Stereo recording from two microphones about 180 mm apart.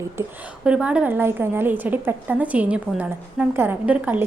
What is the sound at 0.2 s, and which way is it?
A woman's voice, 5° right (ahead or behind).